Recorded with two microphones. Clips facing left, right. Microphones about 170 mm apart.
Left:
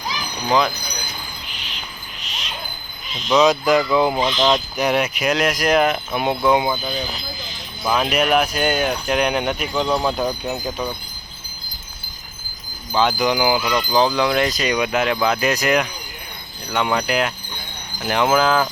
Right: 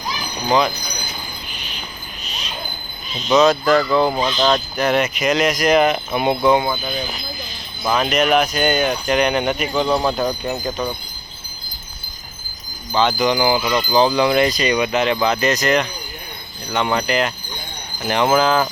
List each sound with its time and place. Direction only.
3.2 s speech: centre (ahead or behind)
3.5 s a sound: 15° left (ahead or behind)
5.2 s speech: 5° left (ahead or behind)
6.5 s a sound: 10° left (ahead or behind)
7.9 s speech: 5° left (ahead or behind)
12.9 s speech: 5° left (ahead or behind)